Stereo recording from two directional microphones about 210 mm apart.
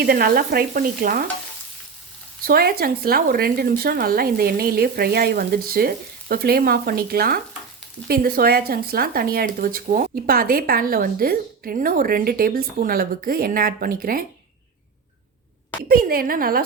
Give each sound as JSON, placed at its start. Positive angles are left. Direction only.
{"t": 0.0, "sound": "speech", "side_deg": -45}
{"t": 2.4, "sound": "speech", "side_deg": -45}
{"t": 15.9, "sound": "speech", "side_deg": -45}